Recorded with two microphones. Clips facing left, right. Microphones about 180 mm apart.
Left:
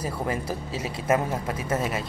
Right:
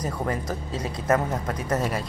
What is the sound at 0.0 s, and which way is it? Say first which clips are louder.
A man's voice: right 1 dB; 10° left (ahead or behind).